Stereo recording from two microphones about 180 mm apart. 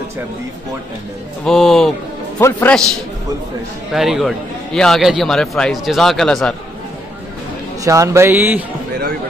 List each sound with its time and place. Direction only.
1.4 s a man's voice: centre (ahead or behind)
2.3 s a man's voice: 15° left (ahead or behind)
3.9 s a man's voice: centre (ahead or behind)
7.8 s a man's voice: 15° right (ahead or behind)